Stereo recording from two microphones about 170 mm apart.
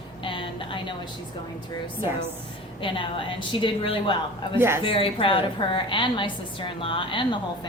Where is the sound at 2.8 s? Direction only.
30° left (ahead or behind).